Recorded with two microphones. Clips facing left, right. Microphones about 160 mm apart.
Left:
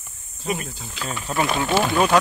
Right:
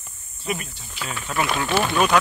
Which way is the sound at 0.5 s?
35° left (ahead or behind).